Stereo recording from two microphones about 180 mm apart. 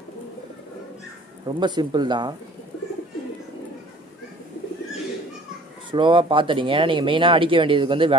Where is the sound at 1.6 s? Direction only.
25° right (ahead or behind).